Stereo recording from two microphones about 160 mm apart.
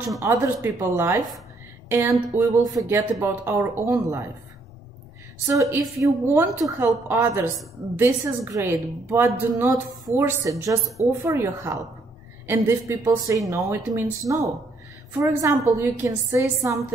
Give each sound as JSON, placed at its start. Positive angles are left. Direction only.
{"t": 0.2, "sound": "a woman's voice", "side_deg": -20}
{"t": 5.5, "sound": "a woman's voice", "side_deg": -20}